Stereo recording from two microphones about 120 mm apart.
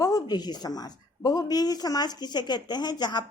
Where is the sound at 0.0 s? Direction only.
30° left (ahead or behind).